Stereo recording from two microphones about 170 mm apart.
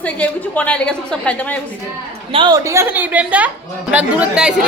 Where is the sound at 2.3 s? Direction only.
25° right (ahead or behind).